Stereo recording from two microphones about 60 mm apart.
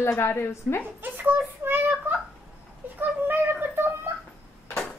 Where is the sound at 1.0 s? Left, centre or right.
Right.